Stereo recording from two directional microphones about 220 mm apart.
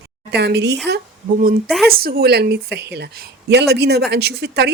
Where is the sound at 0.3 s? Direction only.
50° right (ahead or behind).